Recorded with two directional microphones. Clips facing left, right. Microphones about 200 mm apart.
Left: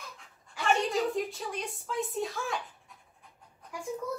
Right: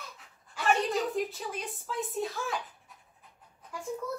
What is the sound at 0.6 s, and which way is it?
A woman's voice, centre (ahead or behind).